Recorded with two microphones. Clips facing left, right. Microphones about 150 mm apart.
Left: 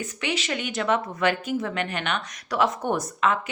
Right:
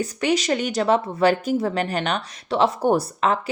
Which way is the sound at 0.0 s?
40° right (ahead or behind).